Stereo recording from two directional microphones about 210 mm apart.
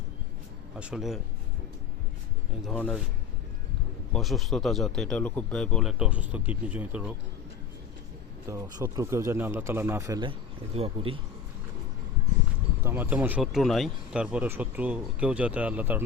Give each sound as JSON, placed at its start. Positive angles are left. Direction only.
{"t": 0.8, "sound": "speech", "side_deg": -5}
{"t": 2.6, "sound": "speech", "side_deg": 5}
{"t": 4.1, "sound": "speech", "side_deg": 0}
{"t": 8.4, "sound": "speech", "side_deg": -15}
{"t": 12.8, "sound": "speech", "side_deg": -10}